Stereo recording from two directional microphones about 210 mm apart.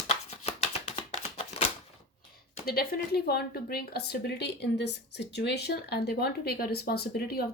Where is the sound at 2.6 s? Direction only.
45° left (ahead or behind).